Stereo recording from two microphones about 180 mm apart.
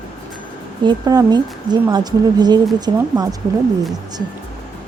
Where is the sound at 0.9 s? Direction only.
20° right (ahead or behind).